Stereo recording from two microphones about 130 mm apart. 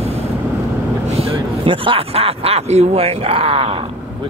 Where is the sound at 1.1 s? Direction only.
40° right (ahead or behind).